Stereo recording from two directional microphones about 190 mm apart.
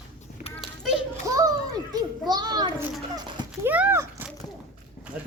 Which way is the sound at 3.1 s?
20° right (ahead or behind).